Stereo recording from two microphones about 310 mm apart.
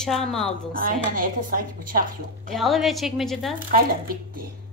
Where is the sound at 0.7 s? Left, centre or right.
Right.